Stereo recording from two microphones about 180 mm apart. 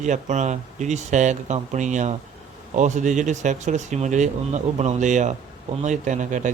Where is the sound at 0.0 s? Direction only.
40° right (ahead or behind).